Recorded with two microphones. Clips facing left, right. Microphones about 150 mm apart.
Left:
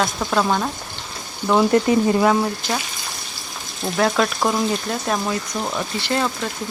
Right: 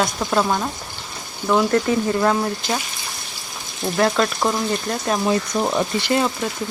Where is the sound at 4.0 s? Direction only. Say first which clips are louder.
Even; centre (ahead or behind).